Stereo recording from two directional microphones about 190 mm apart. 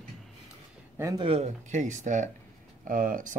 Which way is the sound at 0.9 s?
15° right (ahead or behind).